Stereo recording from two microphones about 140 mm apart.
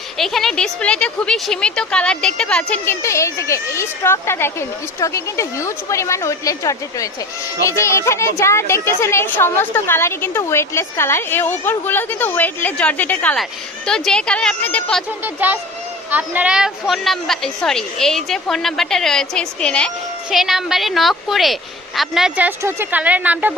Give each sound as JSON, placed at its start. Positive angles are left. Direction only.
{"t": 0.2, "sound": "a woman's voice", "side_deg": 5}
{"t": 3.0, "sound": "a woman's voice", "side_deg": 20}
{"t": 15.2, "sound": "a child's voice", "side_deg": -10}